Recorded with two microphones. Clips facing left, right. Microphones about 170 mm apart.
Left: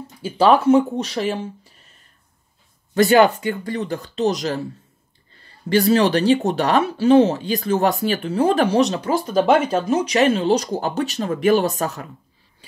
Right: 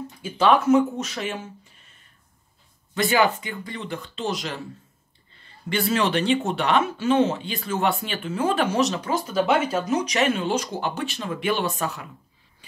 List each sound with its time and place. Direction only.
0.2 s speech: 30° left (ahead or behind)
2.9 s speech: 45° left (ahead or behind)
5.7 s speech: 35° left (ahead or behind)